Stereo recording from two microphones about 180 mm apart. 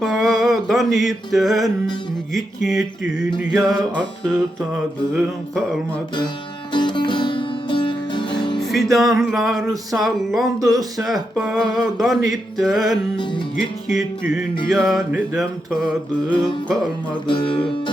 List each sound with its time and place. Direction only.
0.0 s mantra: centre (ahead or behind)
2.3 s speech: centre (ahead or behind)
5.1 s speech: centre (ahead or behind)
6.7 s music: 25° left (ahead or behind)
8.7 s speech: centre (ahead or behind)
17.2 s music: 30° left (ahead or behind)